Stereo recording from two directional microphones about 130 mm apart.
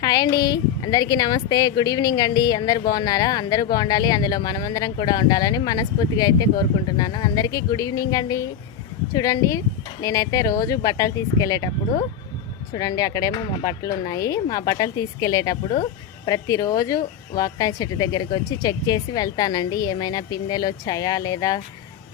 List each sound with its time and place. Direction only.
0.0 s speech: 30° left (ahead or behind)
12.7 s speech: 30° left (ahead or behind)